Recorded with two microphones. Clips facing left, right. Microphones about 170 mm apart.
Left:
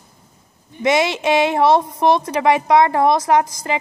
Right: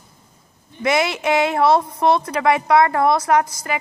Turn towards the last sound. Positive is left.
turn(degrees=20)  # may be behind; listen again after turning